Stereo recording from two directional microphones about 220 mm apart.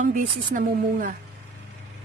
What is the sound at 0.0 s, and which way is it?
Speech, 35° right (ahead or behind).